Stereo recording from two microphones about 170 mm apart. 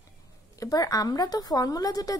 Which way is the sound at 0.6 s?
20° left (ahead or behind).